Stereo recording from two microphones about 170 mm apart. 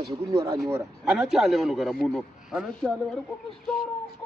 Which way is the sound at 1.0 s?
5° right (ahead or behind).